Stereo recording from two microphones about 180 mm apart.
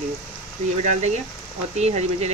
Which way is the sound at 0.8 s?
40° right (ahead or behind).